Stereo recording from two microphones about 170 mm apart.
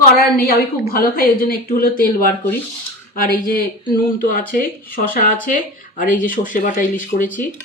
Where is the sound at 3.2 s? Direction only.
55° left (ahead or behind).